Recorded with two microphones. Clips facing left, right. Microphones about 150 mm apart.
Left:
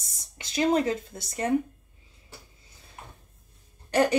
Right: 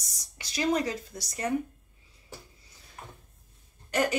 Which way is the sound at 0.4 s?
25° left (ahead or behind).